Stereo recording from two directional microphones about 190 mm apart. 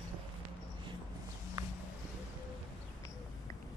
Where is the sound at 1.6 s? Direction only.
20° right (ahead or behind).